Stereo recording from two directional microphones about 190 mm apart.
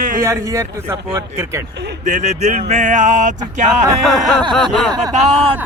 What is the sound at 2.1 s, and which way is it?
Speech, 40° right (ahead or behind).